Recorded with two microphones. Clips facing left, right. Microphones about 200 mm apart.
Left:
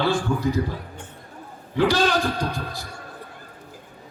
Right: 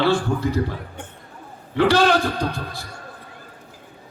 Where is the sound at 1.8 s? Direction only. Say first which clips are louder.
Right 3 dB; 65° right (ahead or behind).